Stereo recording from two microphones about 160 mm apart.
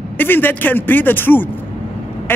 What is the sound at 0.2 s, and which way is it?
Speech, 10° left (ahead or behind).